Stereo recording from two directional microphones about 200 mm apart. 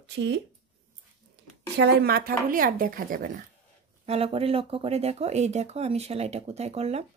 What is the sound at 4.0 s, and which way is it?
Speech, 30° right (ahead or behind).